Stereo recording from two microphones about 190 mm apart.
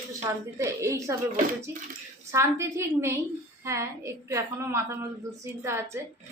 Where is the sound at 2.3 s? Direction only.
15° right (ahead or behind).